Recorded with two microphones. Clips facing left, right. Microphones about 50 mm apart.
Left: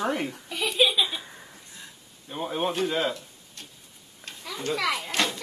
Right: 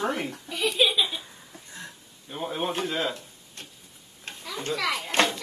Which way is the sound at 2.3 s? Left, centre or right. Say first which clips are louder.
Left 1 dB; centre.